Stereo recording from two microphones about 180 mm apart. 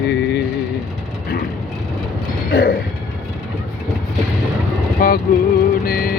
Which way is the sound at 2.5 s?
60° left (ahead or behind).